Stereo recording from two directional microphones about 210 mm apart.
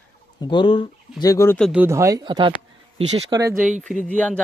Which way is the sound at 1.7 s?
10° right (ahead or behind).